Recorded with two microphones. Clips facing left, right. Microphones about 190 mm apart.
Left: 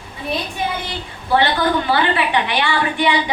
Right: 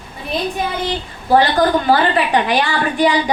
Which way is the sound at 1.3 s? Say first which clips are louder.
Right 4 dB; 40° right (ahead or behind).